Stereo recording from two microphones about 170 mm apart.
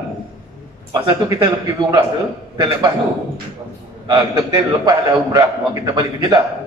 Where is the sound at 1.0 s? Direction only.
20° right (ahead or behind).